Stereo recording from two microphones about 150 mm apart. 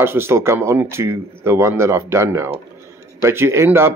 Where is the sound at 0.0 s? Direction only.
15° right (ahead or behind).